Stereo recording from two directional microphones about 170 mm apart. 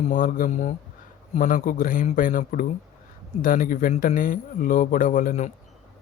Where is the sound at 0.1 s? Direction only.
50° left (ahead or behind).